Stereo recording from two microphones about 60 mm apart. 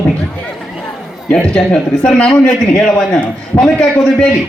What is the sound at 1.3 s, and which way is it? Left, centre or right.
A man's voice, centre.